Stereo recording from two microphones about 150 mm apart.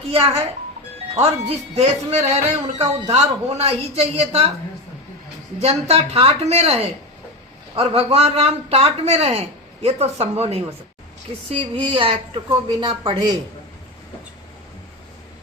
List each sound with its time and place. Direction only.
1.1 s speech: 45° right (ahead or behind)
5.5 s speech: 45° right (ahead or behind)